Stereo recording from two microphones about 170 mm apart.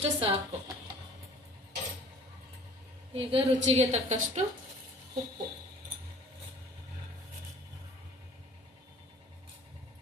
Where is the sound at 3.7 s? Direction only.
40° right (ahead or behind).